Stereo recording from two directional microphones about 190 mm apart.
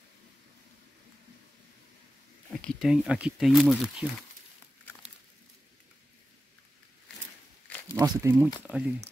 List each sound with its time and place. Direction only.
2.6 s speech: centre (ahead or behind)
8.0 s speech: 15° right (ahead or behind)
8.6 s speech: 5° right (ahead or behind)